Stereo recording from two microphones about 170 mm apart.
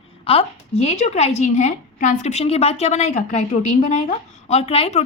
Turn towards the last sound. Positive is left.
turn(degrees=40)  # may be behind; listen again after turning